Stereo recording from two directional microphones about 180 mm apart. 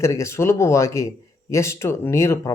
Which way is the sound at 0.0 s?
15° left (ahead or behind).